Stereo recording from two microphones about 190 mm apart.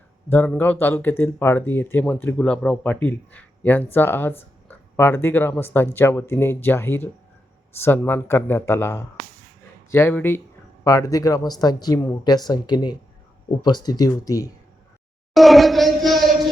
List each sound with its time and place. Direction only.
0.3 s speech: 10° left (ahead or behind)
15.3 s speech: centre (ahead or behind)